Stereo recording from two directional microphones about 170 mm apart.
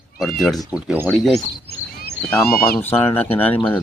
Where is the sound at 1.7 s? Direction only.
70° left (ahead or behind).